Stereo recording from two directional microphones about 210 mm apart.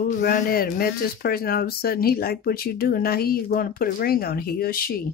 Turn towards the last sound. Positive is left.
turn(degrees=45)  # may be behind; listen again after turning